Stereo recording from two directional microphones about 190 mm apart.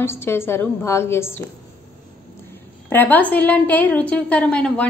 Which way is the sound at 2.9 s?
10° left (ahead or behind).